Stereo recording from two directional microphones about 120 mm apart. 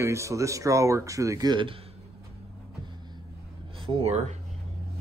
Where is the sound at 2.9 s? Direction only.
35° right (ahead or behind).